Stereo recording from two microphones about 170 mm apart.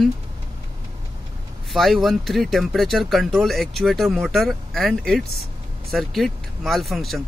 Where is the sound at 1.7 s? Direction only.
Centre (ahead or behind).